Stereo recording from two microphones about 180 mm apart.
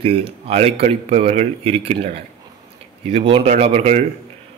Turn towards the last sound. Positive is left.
turn(degrees=-35)  # may be behind; listen again after turning